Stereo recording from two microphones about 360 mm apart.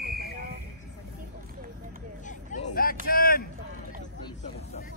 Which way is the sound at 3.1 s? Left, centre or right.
Left.